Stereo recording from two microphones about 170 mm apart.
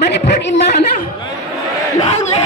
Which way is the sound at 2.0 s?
35° left (ahead or behind).